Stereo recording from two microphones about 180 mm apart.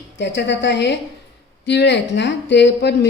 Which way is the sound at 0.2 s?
75° left (ahead or behind).